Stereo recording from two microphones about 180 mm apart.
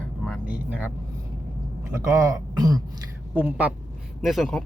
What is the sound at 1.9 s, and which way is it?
Speech, 15° right (ahead or behind).